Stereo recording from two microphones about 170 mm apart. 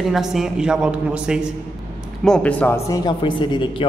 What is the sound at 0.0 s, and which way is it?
A man's voice, centre (ahead or behind).